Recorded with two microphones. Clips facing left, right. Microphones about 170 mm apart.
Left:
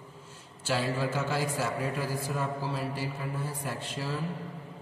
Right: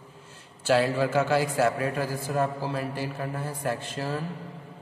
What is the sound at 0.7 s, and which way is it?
A man's voice, 75° right (ahead or behind).